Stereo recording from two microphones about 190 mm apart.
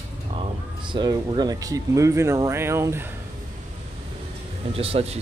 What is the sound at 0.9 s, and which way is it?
Speech, 25° right (ahead or behind).